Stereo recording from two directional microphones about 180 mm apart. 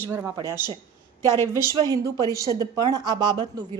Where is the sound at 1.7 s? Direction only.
20° right (ahead or behind).